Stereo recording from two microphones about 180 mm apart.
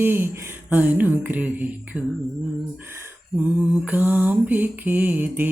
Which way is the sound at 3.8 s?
10° right (ahead or behind).